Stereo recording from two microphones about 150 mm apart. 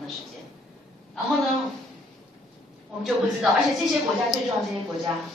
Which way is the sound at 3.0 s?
Centre (ahead or behind).